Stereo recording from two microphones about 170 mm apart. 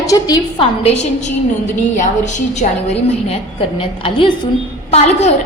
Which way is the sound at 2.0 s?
45° left (ahead or behind).